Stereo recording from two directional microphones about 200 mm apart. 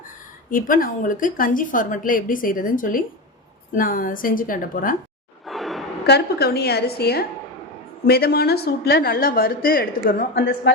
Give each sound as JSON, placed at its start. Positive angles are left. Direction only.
{"t": 0.5, "sound": "a woman's voice", "side_deg": 45}
{"t": 5.5, "sound": "a sound", "side_deg": 0}
{"t": 6.1, "sound": "a woman's voice", "side_deg": 55}